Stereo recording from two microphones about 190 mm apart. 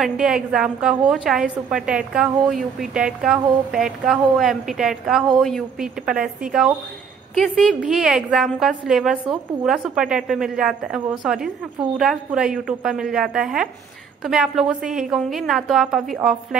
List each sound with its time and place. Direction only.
0.0 s a woman's voice: 5° right (ahead or behind)